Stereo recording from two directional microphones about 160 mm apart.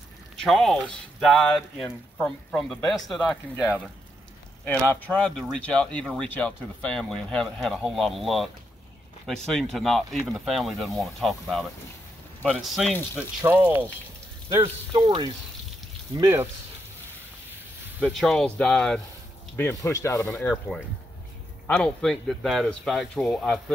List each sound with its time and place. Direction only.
0.4 s speech: centre (ahead or behind)
5.0 s speech: 5° left (ahead or behind)
13.2 s speech: 10° right (ahead or behind)
14.9 s speech: 30° right (ahead or behind)
16.2 s speech: 15° right (ahead or behind)
18.0 s speech: centre (ahead or behind)
19.5 s speech: 20° left (ahead or behind)
21.6 s speech: 5° left (ahead or behind)